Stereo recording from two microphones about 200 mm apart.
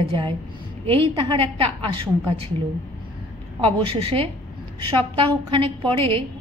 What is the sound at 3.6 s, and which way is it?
Speech, 25° right (ahead or behind).